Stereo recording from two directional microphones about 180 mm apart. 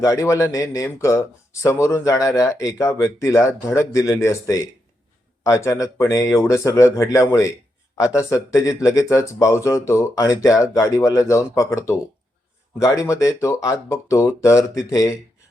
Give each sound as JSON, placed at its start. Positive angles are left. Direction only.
{"t": 0.0, "sound": "speech", "side_deg": 15}